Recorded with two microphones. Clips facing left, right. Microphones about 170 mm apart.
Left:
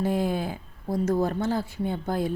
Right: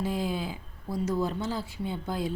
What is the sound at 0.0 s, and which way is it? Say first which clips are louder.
Speech: left 5 dB; 55° left (ahead or behind).